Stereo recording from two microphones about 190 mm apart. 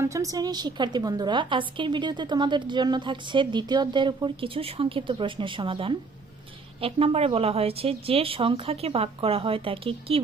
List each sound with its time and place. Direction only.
0.0 s a woman's voice: 15° right (ahead or behind)